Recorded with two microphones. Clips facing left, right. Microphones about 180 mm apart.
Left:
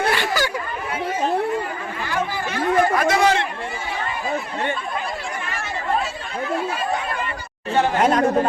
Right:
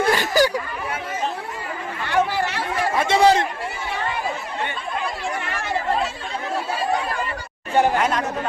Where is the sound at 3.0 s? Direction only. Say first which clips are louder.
Right 2 dB; 30° right (ahead or behind).